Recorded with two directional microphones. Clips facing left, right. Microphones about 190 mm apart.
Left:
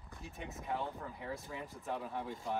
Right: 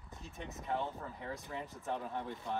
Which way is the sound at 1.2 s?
10° left (ahead or behind).